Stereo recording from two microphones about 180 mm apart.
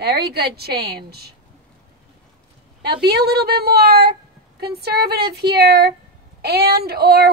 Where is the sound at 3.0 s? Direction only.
60° right (ahead or behind).